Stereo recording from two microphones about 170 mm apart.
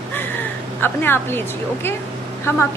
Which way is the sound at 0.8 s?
10° left (ahead or behind).